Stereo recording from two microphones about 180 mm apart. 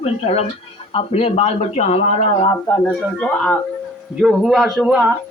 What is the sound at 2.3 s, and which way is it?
Speech, 25° left (ahead or behind).